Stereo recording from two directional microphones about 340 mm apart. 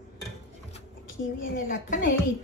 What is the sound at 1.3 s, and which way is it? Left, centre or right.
Speech, left.